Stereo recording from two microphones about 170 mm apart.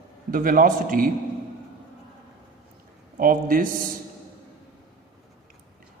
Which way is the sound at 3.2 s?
55° right (ahead or behind).